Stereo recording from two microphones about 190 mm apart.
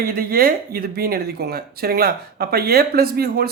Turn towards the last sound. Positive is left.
turn(degrees=-55)  # may be behind; listen again after turning